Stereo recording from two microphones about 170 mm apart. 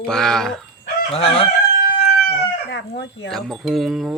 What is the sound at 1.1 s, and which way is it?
Chicken, 35° left (ahead or behind).